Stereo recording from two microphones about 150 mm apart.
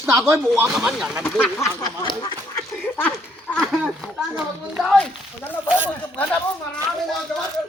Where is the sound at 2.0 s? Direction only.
35° left (ahead or behind).